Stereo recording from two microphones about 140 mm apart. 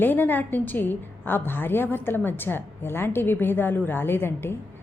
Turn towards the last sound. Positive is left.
turn(degrees=15)  # may be behind; listen again after turning